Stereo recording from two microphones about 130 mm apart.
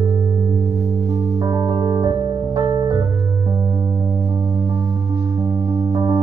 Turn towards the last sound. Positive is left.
turn(degrees=-25)  # may be behind; listen again after turning